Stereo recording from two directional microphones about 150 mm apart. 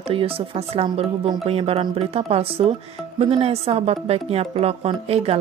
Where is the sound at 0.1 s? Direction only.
40° right (ahead or behind).